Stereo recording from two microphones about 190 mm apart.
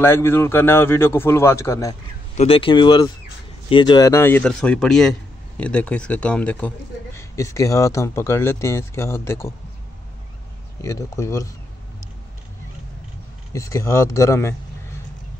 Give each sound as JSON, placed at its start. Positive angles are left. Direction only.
{"t": 0.0, "sound": "speech", "side_deg": 10}
{"t": 2.3, "sound": "speech", "side_deg": 30}
{"t": 10.8, "sound": "speech", "side_deg": 15}
{"t": 13.5, "sound": "speech", "side_deg": 15}